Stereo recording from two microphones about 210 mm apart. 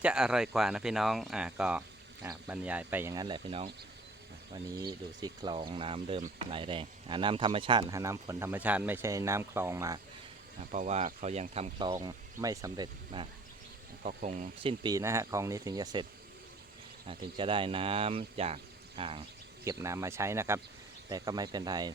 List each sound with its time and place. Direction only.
0.0 s speech: 5° right (ahead or behind)
10.7 s speech: 35° right (ahead or behind)
14.0 s speech: 35° right (ahead or behind); by 16.0 s 20° right (ahead or behind)
17.1 s speech: 25° right (ahead or behind)
19.6 s speech: 15° right (ahead or behind)